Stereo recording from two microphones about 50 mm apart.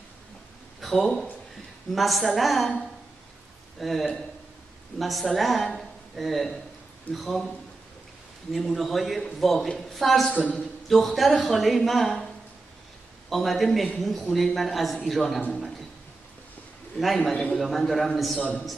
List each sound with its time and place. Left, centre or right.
0.7 s a man's voice: centre
3.8 s a man's voice: centre
13.3 s a man's voice: centre
17.0 s a man's voice: centre
17.3 s a man's voice: centre
17.6 s a man's voice: centre